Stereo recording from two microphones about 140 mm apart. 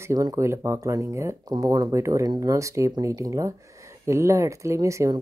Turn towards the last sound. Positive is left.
turn(degrees=-20)  # may be behind; listen again after turning